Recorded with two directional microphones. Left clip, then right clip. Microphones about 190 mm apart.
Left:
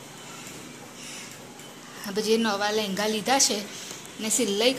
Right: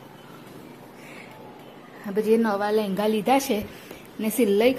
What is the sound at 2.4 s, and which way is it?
A woman's voice, 35° right (ahead or behind).